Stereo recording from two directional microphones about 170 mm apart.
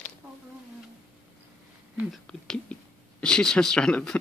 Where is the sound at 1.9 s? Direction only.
Centre (ahead or behind).